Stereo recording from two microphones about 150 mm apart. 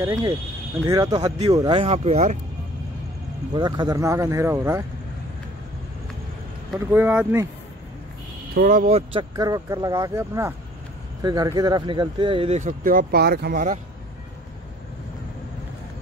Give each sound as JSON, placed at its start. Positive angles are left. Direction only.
{"t": 0.0, "sound": "speech", "side_deg": -20}
{"t": 1.7, "sound": "speech", "side_deg": -40}
{"t": 3.5, "sound": "speech", "side_deg": -30}
{"t": 6.9, "sound": "speech", "side_deg": -15}
{"t": 8.5, "sound": "speech", "side_deg": -70}
{"t": 9.3, "sound": "speech", "side_deg": -25}
{"t": 12.5, "sound": "speech", "side_deg": -60}